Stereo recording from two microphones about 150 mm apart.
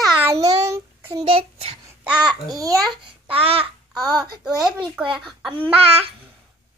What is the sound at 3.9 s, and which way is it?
Child singing, 25° right (ahead or behind).